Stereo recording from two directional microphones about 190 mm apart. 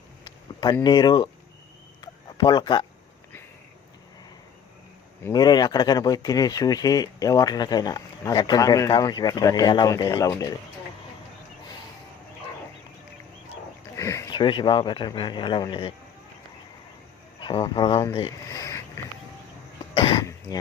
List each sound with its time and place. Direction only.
0.3 s speech: 20° left (ahead or behind)
2.0 s a sound: 25° left (ahead or behind)
5.2 s speech: 20° left (ahead or behind)
13.9 s speech: 15° left (ahead or behind)
17.4 s speech: 25° left (ahead or behind)
19.9 s cough: 25° left (ahead or behind)